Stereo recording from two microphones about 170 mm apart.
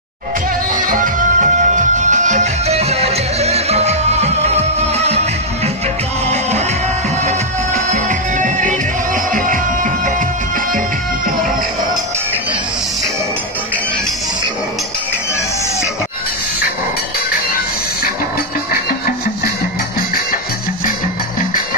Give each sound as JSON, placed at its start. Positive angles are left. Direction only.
{"t": 0.8, "sound": "music", "side_deg": -50}
{"t": 7.2, "sound": "music", "side_deg": -45}
{"t": 18.7, "sound": "music", "side_deg": 60}